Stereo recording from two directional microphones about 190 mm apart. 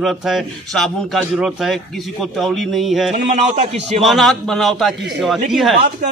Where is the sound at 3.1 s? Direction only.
40° right (ahead or behind).